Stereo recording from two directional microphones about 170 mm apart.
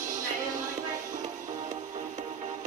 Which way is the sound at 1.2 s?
45° right (ahead or behind).